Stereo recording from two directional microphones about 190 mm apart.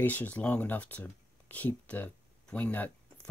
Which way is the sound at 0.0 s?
10° left (ahead or behind).